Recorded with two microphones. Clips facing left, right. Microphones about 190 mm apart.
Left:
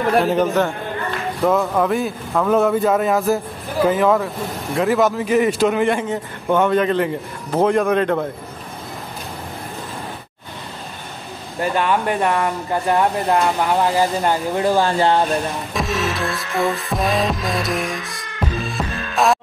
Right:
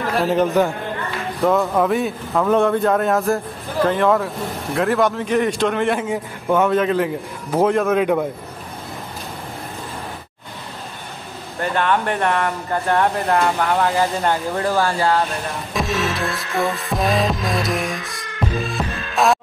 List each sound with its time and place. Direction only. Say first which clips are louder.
0.2 s a man's voice: even; centre (ahead or behind)
11.6 s speech: left 1 dB; 10° left (ahead or behind)
15.7 s music: right 2 dB; centre (ahead or behind)